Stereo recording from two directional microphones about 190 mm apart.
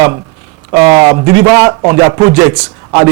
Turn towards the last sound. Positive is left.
turn(degrees=-20)  # may be behind; listen again after turning